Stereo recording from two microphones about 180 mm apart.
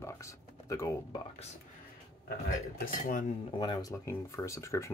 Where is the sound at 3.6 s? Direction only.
20° left (ahead or behind).